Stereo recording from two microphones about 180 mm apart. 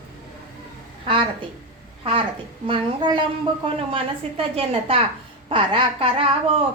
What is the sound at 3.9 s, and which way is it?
Child singing, 30° right (ahead or behind).